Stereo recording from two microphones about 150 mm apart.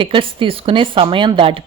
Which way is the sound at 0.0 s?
35° right (ahead or behind).